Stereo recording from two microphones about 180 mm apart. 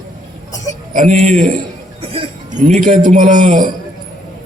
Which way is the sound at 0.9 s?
40° right (ahead or behind).